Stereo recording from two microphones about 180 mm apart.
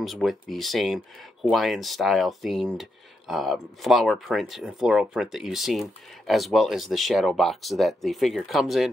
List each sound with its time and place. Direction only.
0.0 s speech: centre (ahead or behind)